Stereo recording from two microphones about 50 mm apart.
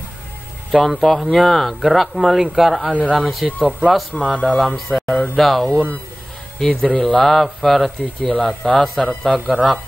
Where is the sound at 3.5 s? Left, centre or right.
Right.